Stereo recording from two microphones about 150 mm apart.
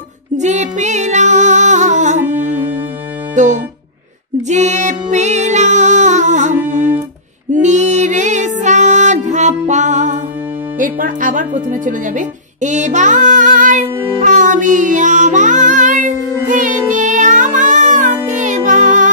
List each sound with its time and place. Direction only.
0.4 s music: 50° right (ahead or behind)
10.8 s speech: 65° right (ahead or behind)
14.2 s music: 55° right (ahead or behind)